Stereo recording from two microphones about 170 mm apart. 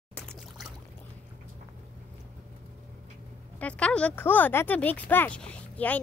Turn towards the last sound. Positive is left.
turn(degrees=10)  # may be behind; listen again after turning